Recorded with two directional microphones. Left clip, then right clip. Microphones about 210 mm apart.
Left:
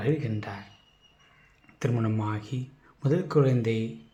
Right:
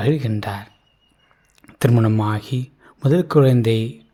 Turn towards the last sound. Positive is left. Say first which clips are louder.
# right 9 dB
turn(degrees=-45)  # may be behind; listen again after turning